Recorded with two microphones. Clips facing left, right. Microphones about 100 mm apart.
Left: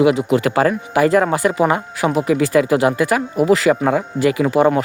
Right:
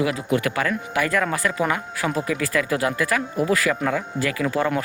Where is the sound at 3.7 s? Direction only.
30° left (ahead or behind).